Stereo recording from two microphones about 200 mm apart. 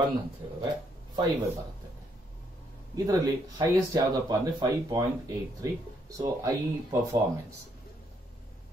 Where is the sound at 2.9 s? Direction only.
15° right (ahead or behind).